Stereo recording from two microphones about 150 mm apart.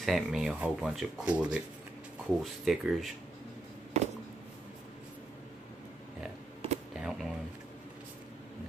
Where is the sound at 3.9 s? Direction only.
45° right (ahead or behind).